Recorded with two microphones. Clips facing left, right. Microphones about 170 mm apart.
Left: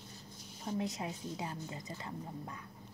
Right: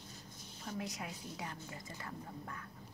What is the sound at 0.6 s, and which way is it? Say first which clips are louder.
A woman's voice: left 6 dB; 25° left (ahead or behind).